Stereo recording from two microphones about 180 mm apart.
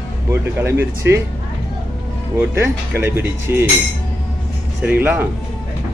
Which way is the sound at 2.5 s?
15° right (ahead or behind).